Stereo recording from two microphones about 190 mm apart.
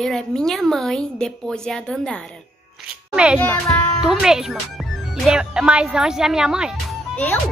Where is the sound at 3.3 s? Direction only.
10° left (ahead or behind).